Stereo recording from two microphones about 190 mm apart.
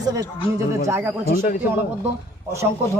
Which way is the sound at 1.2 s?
45° left (ahead or behind).